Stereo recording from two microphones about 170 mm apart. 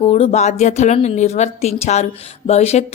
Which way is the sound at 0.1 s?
40° left (ahead or behind).